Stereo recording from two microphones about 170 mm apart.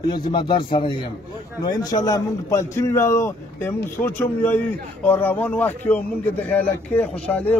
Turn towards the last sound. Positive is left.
turn(degrees=5)  # may be behind; listen again after turning